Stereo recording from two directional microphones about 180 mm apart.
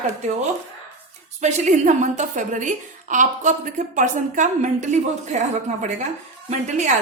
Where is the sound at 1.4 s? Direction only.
40° right (ahead or behind).